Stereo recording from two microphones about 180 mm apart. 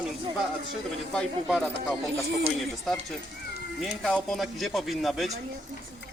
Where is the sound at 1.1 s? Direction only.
Centre (ahead or behind).